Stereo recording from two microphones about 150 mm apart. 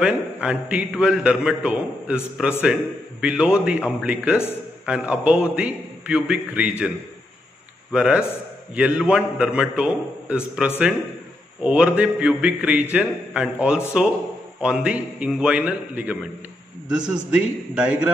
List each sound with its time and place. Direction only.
0.0 s a man's voice: 10° right (ahead or behind)
7.9 s a man's voice: 5° right (ahead or behind)